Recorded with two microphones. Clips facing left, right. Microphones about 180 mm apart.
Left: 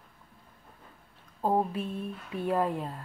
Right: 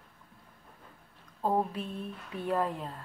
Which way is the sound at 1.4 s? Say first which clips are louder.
Left 2 dB; 10° left (ahead or behind).